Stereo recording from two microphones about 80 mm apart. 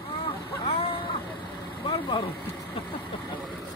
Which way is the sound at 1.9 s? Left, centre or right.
Left.